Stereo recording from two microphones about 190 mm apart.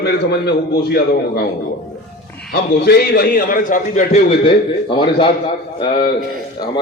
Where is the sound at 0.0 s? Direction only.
60° left (ahead or behind).